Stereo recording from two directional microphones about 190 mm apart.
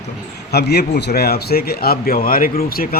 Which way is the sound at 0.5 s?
60° left (ahead or behind).